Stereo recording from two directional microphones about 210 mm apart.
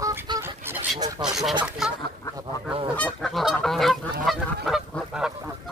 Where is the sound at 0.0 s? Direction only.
15° right (ahead or behind).